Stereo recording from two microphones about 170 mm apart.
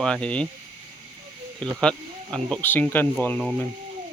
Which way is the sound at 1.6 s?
5° left (ahead or behind).